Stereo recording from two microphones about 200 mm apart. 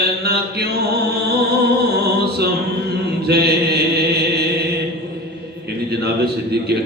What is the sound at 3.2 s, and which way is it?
Mantra, 55° right (ahead or behind).